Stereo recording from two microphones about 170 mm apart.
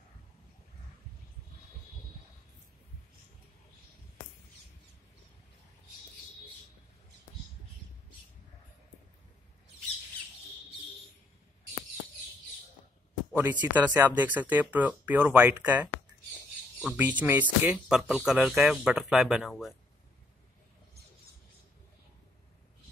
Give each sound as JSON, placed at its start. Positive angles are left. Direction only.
{"t": 13.3, "sound": "speech", "side_deg": -10}